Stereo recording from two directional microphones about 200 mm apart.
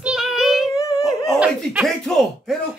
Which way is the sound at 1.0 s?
Centre (ahead or behind).